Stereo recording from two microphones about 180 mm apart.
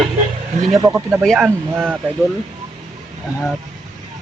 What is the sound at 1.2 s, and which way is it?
Speech, 5° left (ahead or behind).